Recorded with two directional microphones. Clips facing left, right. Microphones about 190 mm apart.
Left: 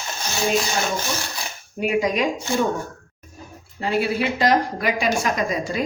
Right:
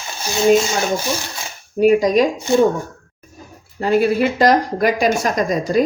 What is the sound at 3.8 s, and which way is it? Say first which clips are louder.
A woman's voice: right 7 dB; 45° right (ahead or behind).